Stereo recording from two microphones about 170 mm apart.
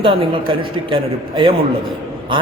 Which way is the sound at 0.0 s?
30° right (ahead or behind).